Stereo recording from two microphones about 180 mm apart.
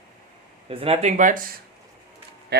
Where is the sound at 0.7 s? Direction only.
35° right (ahead or behind).